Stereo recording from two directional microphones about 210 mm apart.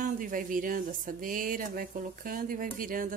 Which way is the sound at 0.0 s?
40° right (ahead or behind).